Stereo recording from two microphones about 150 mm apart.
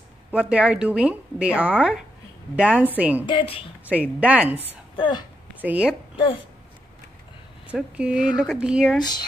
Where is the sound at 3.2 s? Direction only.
35° left (ahead or behind).